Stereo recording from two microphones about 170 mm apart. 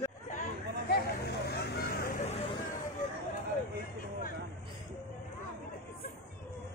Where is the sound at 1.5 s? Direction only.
75° left (ahead or behind).